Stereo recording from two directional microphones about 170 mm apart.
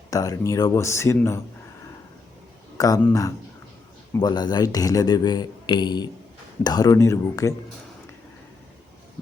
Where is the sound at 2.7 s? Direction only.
20° left (ahead or behind).